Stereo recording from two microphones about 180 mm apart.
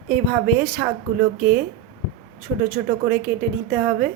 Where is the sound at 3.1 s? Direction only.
55° right (ahead or behind).